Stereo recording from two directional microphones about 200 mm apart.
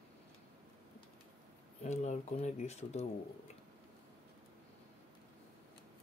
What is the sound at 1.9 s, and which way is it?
Speech, 35° left (ahead or behind).